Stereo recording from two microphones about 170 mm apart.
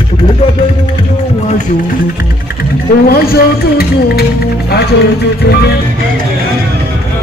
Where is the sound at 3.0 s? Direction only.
65° left (ahead or behind).